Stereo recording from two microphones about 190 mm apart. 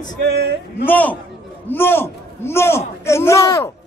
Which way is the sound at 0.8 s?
10° left (ahead or behind).